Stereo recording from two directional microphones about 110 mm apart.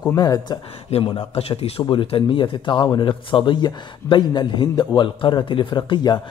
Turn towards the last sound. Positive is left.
turn(degrees=40)  # may be behind; listen again after turning